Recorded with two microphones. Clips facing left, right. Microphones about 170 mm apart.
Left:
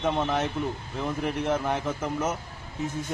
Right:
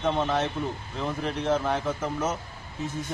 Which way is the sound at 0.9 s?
15° left (ahead or behind).